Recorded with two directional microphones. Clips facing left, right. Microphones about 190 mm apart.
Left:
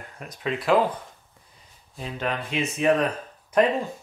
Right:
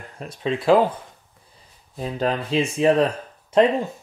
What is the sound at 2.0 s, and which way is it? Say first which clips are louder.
Speech: right 6 dB; 35° right (ahead or behind).